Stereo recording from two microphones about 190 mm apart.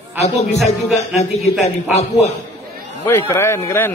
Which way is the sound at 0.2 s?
35° left (ahead or behind).